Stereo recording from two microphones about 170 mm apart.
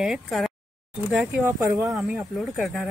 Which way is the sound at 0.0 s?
Centre (ahead or behind).